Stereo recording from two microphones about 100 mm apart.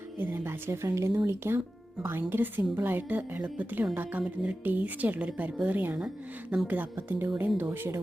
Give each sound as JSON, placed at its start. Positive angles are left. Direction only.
{"t": 0.2, "sound": "a woman's voice", "side_deg": -25}